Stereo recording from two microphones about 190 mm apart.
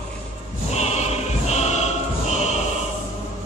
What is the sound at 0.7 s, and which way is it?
Choir, 35° left (ahead or behind).